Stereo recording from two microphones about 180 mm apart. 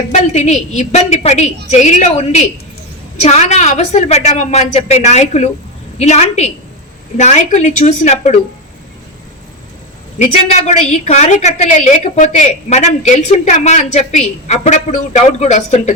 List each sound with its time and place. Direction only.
0.1 s a woman's voice: 40° left (ahead or behind)
10.2 s a woman's voice: 40° left (ahead or behind)